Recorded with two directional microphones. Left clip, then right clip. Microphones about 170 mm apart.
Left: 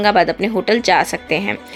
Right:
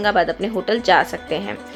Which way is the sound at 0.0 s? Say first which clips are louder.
Left 4 dB; 35° left (ahead or behind).